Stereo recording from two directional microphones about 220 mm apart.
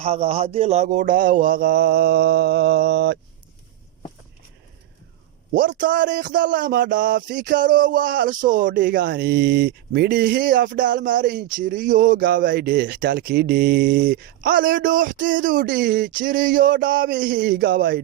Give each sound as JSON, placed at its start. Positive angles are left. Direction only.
{"t": 0.0, "sound": "speech", "side_deg": -25}
{"t": 5.5, "sound": "speech", "side_deg": -40}